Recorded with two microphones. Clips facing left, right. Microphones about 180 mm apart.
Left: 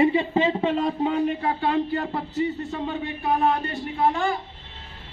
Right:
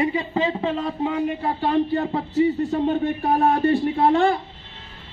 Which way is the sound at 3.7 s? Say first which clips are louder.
Right 6 dB; 35° right (ahead or behind).